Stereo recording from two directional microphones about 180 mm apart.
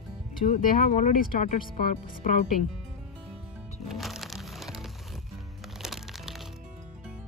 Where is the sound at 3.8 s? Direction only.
Centre (ahead or behind).